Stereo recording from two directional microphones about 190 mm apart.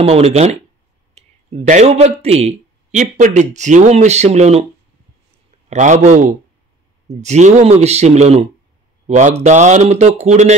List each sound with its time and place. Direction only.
0.0 s a man's voice: 35° right (ahead or behind)
5.7 s a man's voice: 40° right (ahead or behind)